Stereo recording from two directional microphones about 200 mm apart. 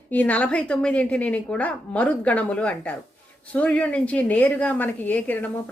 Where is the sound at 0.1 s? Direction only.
5° left (ahead or behind).